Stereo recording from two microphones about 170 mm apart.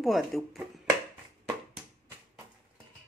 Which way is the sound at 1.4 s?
15° right (ahead or behind).